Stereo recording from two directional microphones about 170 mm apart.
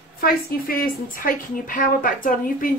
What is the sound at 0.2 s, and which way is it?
A woman's voice, 55° left (ahead or behind).